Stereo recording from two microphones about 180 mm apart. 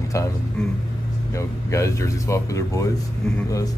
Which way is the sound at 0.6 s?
5° left (ahead or behind).